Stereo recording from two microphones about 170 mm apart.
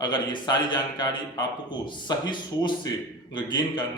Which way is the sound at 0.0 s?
25° left (ahead or behind).